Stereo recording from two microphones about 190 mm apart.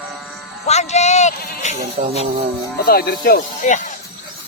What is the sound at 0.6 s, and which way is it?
Speech, 35° left (ahead or behind).